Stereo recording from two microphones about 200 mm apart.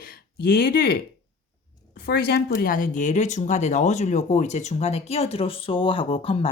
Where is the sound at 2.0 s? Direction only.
50° left (ahead or behind).